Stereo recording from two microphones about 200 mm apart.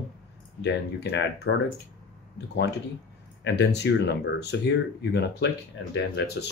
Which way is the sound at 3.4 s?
60° left (ahead or behind).